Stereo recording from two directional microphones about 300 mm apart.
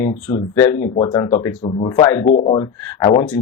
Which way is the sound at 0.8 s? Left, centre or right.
Left.